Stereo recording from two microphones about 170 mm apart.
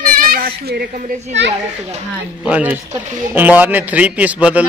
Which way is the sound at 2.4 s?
10° right (ahead or behind).